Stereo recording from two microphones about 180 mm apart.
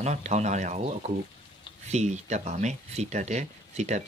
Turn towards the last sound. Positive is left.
turn(degrees=-40)  # may be behind; listen again after turning